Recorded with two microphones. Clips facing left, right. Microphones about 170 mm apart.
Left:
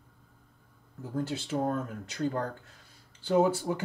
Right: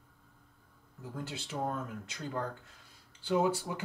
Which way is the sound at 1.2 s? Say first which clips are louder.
Left 7 dB; 45° left (ahead or behind).